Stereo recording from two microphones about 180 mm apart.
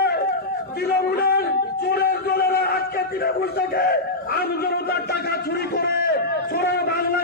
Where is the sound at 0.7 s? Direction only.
60° left (ahead or behind).